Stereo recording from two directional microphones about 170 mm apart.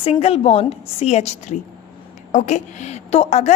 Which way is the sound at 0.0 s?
40° left (ahead or behind).